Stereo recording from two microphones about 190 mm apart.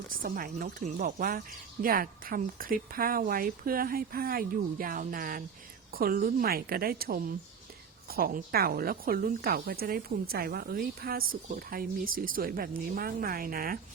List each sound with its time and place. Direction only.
0.1 s speech: 50° right (ahead or behind)